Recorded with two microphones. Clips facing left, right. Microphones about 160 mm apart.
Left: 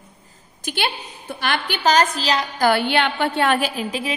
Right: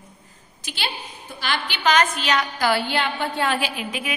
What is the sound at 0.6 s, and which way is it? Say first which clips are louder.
A woman's voice: left 6 dB; 55° left (ahead or behind).